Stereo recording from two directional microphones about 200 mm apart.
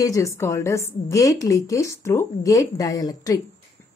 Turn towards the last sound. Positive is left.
turn(degrees=15)  # may be behind; listen again after turning